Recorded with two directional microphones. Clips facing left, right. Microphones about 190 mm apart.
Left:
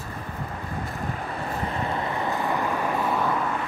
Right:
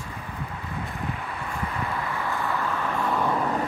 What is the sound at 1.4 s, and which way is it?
Vehicle, 35° left (ahead or behind).